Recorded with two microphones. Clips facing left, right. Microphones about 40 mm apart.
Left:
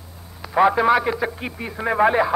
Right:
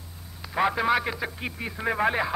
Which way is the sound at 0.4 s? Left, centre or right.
Centre.